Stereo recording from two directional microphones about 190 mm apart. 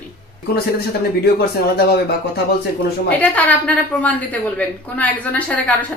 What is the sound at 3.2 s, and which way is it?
A woman's voice, 10° left (ahead or behind).